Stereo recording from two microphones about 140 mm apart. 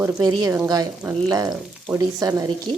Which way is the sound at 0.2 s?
30° right (ahead or behind).